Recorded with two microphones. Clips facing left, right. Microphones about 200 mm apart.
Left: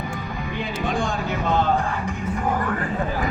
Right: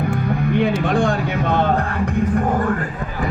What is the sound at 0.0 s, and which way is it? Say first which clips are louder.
Music: right 9 dB; 65° right (ahead or behind).